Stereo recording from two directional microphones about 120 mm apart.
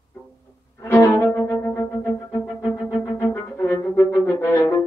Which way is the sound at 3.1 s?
25° left (ahead or behind).